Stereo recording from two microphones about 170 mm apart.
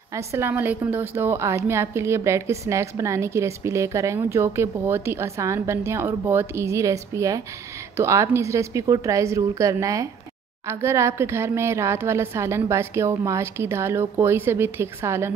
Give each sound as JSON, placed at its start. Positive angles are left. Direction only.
{"t": 0.1, "sound": "a woman's voice", "side_deg": -15}